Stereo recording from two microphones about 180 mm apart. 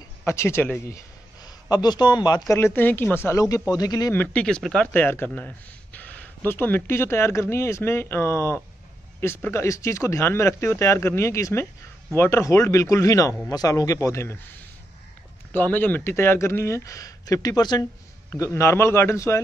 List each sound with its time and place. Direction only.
0.2 s a man's voice: 15° left (ahead or behind)
4.2 s speech: 5° left (ahead or behind)
15.5 s speech: 10° left (ahead or behind)